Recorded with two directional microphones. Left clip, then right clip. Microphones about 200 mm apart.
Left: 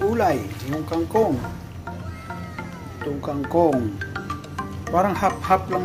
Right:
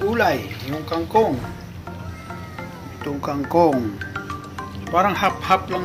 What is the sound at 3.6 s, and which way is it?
Speech, 25° right (ahead or behind).